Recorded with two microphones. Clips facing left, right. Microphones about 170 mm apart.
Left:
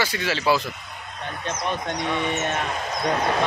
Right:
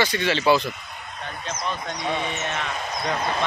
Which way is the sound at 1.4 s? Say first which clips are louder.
Left 3 dB; 55° left (ahead or behind).